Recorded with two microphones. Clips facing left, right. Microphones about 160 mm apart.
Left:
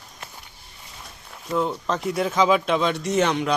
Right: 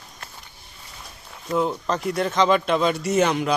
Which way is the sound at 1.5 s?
Centre (ahead or behind).